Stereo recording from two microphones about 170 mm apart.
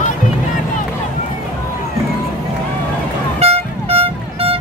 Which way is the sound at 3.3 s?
35° right (ahead or behind).